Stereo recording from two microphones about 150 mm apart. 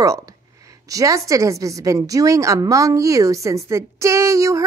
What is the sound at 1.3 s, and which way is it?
A woman's voice, 20° right (ahead or behind).